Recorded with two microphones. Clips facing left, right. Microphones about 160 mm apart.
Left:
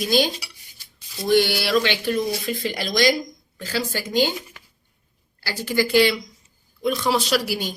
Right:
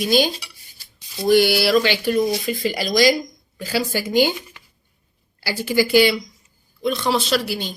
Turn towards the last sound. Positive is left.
turn(degrees=10)  # may be behind; listen again after turning